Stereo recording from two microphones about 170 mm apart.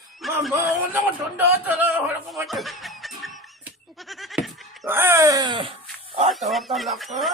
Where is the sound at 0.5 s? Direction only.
15° right (ahead or behind).